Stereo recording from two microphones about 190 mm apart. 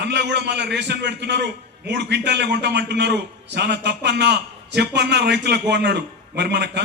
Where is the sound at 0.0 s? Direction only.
65° right (ahead or behind).